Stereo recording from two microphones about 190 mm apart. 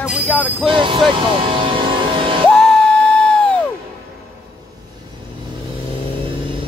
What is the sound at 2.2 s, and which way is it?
Music, 25° right (ahead or behind).